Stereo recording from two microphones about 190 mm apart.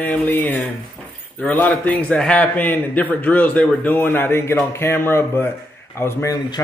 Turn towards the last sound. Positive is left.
turn(degrees=15)  # may be behind; listen again after turning